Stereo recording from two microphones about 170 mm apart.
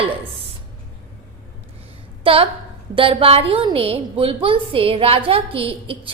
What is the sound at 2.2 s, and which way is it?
A woman's voice, 35° right (ahead or behind).